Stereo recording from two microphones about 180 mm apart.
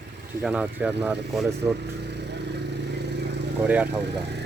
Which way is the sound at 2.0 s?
70° right (ahead or behind).